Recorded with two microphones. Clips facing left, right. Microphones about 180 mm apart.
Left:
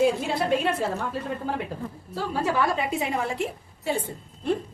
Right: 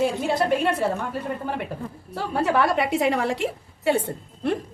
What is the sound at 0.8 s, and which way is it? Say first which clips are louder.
A woman's voice: right 3 dB; 60° right (ahead or behind).